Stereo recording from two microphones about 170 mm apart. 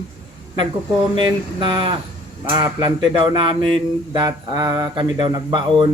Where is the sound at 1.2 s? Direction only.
30° right (ahead or behind).